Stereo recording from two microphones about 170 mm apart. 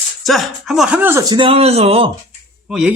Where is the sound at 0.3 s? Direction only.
Centre (ahead or behind); by 1.5 s 20° right (ahead or behind).